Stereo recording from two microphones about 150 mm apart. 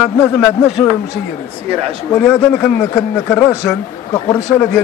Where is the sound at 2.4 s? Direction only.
10° left (ahead or behind); by 4.4 s 25° left (ahead or behind).